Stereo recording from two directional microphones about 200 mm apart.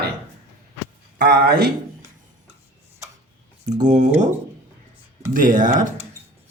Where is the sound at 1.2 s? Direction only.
55° right (ahead or behind).